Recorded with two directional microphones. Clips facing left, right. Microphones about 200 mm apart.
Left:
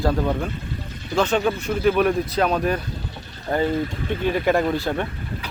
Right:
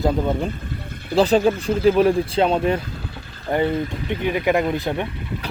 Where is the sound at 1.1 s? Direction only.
35° right (ahead or behind).